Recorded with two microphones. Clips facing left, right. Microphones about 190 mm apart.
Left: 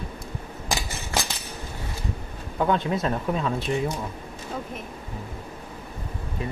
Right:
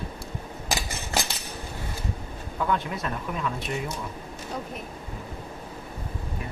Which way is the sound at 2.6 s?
30° left (ahead or behind).